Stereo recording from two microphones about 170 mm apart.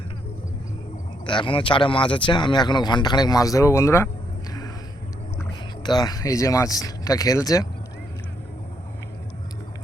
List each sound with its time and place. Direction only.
1.2 s speech: 30° left (ahead or behind)
5.4 s speech: 25° left (ahead or behind)